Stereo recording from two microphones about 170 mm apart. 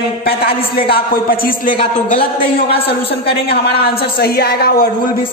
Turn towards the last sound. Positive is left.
turn(degrees=65)  # may be behind; listen again after turning